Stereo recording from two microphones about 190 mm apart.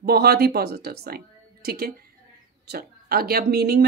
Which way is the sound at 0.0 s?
55° right (ahead or behind).